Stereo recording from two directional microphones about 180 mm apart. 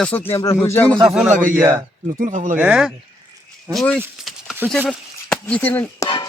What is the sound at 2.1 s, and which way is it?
Speech, 45° right (ahead or behind).